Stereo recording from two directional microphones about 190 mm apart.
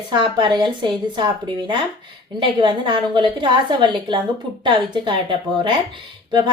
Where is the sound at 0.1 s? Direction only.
25° right (ahead or behind).